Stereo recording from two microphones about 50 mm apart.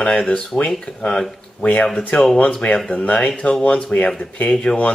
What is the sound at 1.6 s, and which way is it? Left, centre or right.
Speech, left.